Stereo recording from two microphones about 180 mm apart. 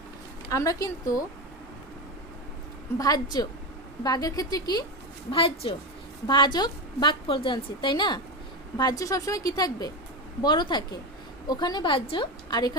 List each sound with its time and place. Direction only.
0.5 s a woman's voice: 20° left (ahead or behind)
3.0 s a woman's voice: 20° left (ahead or behind)